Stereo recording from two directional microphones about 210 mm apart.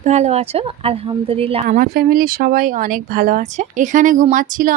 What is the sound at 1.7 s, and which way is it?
Speech, 45° right (ahead or behind).